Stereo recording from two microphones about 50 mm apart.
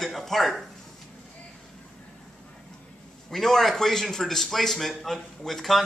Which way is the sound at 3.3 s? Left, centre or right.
Centre.